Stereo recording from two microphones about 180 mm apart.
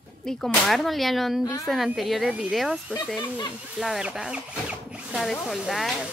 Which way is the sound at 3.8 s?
5° right (ahead or behind).